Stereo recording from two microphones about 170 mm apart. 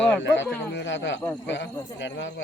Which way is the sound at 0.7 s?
90° left.